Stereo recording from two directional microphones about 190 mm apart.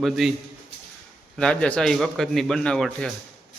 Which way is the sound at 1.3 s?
5° left (ahead or behind).